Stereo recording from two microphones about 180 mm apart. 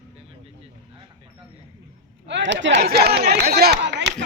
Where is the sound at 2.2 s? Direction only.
80° right.